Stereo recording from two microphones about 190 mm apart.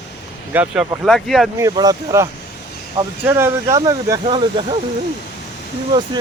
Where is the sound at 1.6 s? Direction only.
20° right (ahead or behind).